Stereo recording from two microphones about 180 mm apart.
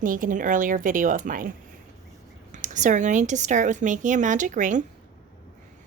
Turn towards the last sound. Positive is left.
turn(degrees=-45)  # may be behind; listen again after turning